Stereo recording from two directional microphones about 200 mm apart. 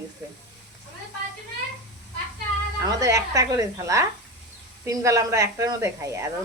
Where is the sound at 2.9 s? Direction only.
15° right (ahead or behind).